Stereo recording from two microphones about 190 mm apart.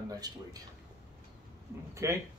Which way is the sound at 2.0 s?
15° right (ahead or behind).